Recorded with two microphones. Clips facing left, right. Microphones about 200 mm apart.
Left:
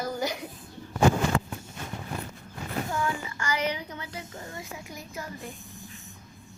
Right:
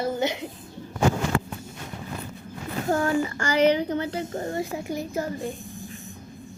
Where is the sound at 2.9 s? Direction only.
45° right (ahead or behind).